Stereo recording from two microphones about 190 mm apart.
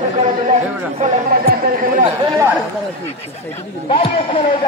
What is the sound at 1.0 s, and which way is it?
Chatter, 45° right (ahead or behind).